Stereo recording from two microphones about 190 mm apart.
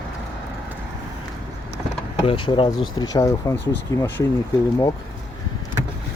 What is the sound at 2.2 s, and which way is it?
Speech, 25° left (ahead or behind).